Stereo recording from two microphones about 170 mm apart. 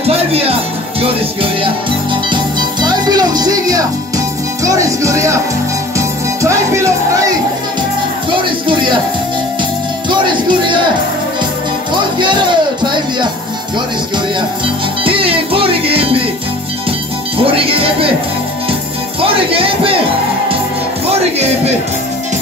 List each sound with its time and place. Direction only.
0.0 s music: 35° right (ahead or behind); by 7.3 s 20° right (ahead or behind)
8.3 s music: 30° right (ahead or behind)
10.0 s music: 30° right (ahead or behind)
11.9 s music: 25° right (ahead or behind)
15.0 s music: 30° right (ahead or behind)
17.4 s music: 35° right (ahead or behind)
19.2 s music: 30° right (ahead or behind)
21.1 s music: 40° right (ahead or behind)